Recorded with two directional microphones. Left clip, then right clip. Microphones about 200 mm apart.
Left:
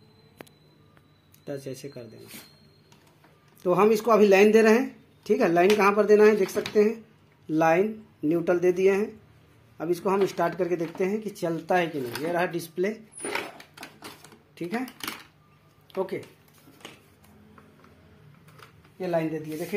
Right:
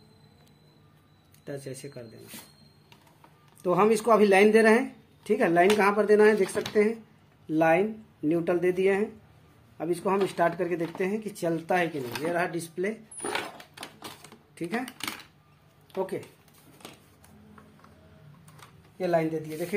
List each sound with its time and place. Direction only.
1.8 s speech: 10° left (ahead or behind)
3.6 s speech: 5° left (ahead or behind); by 12.9 s 20° left (ahead or behind)
14.2 s typing: 10° left (ahead or behind)
15.9 s speech: 10° left (ahead or behind)
18.9 s speech: centre (ahead or behind)